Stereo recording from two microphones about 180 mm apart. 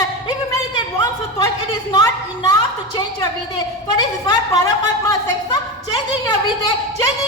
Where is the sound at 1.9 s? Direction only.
20° left (ahead or behind).